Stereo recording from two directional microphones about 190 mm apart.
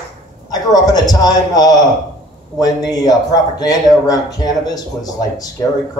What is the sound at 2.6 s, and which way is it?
Speech, 20° left (ahead or behind).